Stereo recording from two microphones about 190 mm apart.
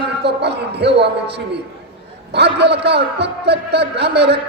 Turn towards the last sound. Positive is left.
turn(degrees=-60)  # may be behind; listen again after turning